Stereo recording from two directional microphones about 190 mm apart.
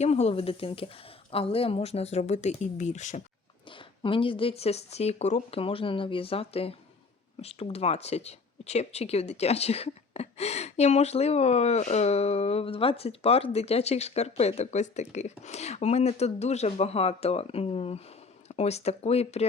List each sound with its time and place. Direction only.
0.0 s speech: 35° left (ahead or behind)
3.7 s speech: 25° left (ahead or behind)